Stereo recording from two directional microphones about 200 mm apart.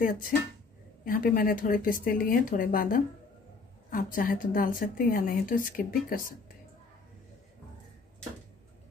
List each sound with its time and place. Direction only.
1.0 s a woman's voice: 45° left (ahead or behind)